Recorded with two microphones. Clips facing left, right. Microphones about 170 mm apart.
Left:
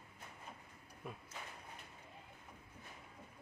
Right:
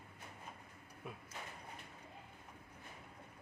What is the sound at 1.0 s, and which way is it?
Speech, centre (ahead or behind).